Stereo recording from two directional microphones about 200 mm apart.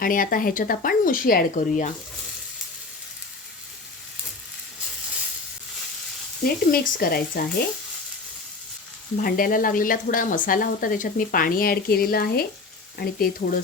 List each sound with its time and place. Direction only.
0.0 s speech: 45° left (ahead or behind)
6.4 s speech: 45° left (ahead or behind)
9.2 s speech: 45° left (ahead or behind)